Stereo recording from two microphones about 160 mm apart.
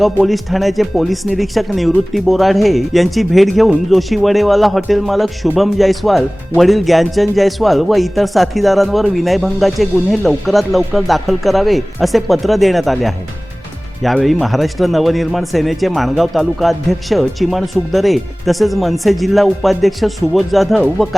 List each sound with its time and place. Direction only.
0.0 s speech: centre (ahead or behind)